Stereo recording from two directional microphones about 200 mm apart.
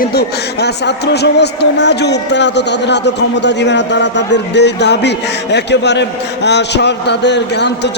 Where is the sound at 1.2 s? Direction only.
60° left (ahead or behind).